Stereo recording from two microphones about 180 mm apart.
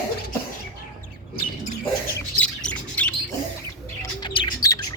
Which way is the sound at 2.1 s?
5° left (ahead or behind).